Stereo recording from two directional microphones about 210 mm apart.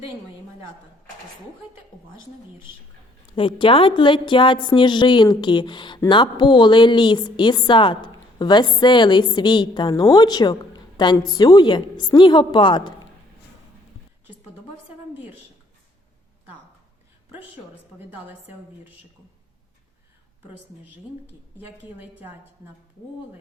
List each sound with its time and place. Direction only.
3.3 s a woman's voice: 25° left (ahead or behind)